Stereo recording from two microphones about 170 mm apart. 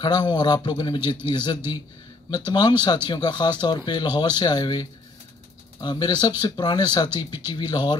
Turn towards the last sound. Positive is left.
turn(degrees=25)  # may be behind; listen again after turning